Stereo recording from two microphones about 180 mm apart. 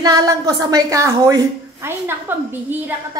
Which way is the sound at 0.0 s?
20° right (ahead or behind).